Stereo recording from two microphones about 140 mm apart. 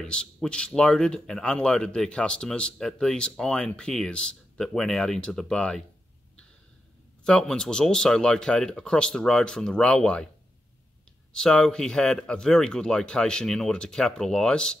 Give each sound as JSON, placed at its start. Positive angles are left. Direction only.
{"t": 0.0, "sound": "speech", "side_deg": 5}
{"t": 7.2, "sound": "speech", "side_deg": 5}
{"t": 11.3, "sound": "speech", "side_deg": 5}